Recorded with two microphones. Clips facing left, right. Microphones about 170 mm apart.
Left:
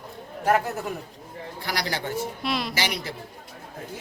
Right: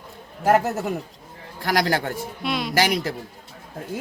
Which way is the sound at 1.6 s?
50° right (ahead or behind).